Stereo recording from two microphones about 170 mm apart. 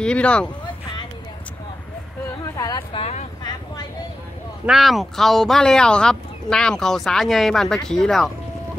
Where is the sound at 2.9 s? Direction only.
35° left (ahead or behind).